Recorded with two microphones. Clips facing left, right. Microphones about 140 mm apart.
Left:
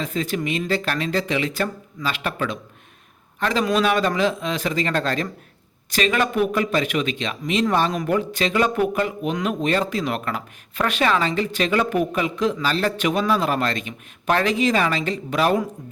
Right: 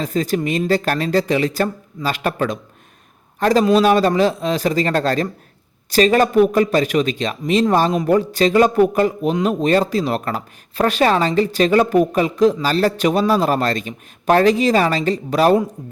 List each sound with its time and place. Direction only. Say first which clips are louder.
0.0 s a man's voice: right 5 dB; 40° right (ahead or behind)